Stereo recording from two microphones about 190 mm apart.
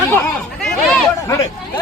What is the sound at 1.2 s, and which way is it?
Speech, 15° left (ahead or behind).